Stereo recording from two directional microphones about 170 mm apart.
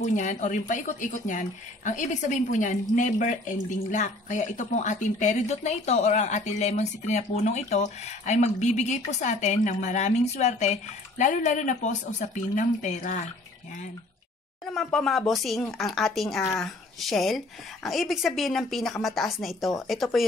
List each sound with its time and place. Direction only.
0.0 s speech: 45° left (ahead or behind)
14.7 s speech: 5° left (ahead or behind)